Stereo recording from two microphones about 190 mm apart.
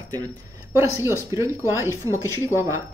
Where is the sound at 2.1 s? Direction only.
15° left (ahead or behind).